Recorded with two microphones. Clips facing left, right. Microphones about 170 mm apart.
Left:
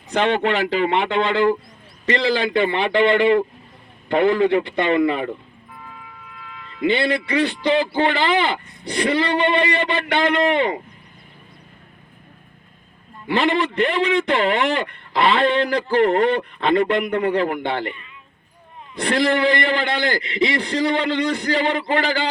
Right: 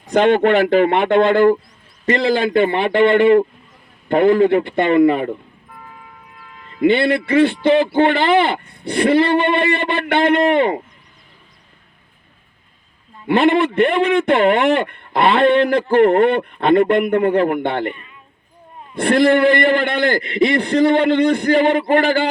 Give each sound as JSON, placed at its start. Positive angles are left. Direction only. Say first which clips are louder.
{"t": 0.1, "sound": "speech", "louder": "right 6 dB", "side_deg": -50}
{"t": 6.6, "sound": "a man's voice", "louder": "right 5 dB", "side_deg": -45}
{"t": 13.2, "sound": "a man's voice", "louder": "right 5 dB", "side_deg": -55}